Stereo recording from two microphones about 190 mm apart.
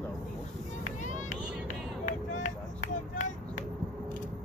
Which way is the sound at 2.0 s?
40° left (ahead or behind).